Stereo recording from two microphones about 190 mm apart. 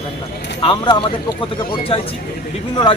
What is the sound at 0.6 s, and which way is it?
Speech, 25° left (ahead or behind).